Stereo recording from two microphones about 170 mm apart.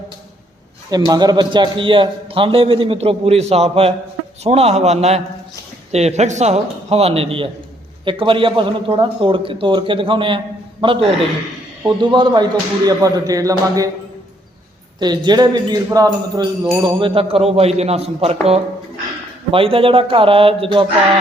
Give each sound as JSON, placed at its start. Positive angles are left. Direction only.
{"t": 0.9, "sound": "speech", "side_deg": -25}
{"t": 14.9, "sound": "speech", "side_deg": -25}
{"t": 19.5, "sound": "speech", "side_deg": -30}